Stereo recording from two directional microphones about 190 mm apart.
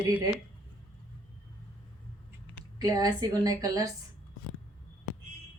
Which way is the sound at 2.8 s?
20° right (ahead or behind).